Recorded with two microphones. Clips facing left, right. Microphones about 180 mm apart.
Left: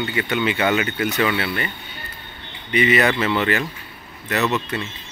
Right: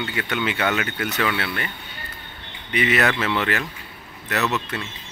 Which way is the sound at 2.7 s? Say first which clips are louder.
Left 3 dB; centre (ahead or behind).